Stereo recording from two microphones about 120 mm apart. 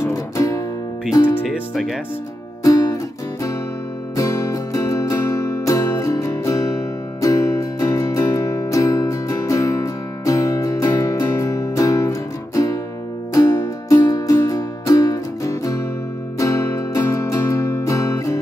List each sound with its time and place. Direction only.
0.0 s music: 25° left (ahead or behind)
1.5 s speech: centre (ahead or behind)
2.6 s music: 30° left (ahead or behind)
4.2 s music: 25° left (ahead or behind)